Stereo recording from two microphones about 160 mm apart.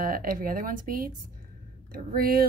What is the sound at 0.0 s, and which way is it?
Speech, 65° right (ahead or behind).